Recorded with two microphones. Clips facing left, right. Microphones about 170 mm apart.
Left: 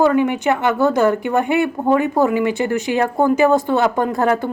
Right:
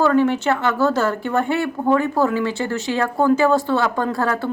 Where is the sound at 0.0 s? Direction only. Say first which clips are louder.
Left 1 dB; 15° left (ahead or behind).